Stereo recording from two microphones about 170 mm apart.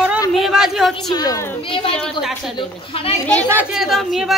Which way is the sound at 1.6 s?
30° left (ahead or behind).